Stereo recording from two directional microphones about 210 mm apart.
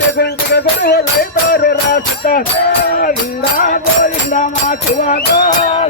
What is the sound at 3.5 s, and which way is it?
Music, 40° left (ahead or behind).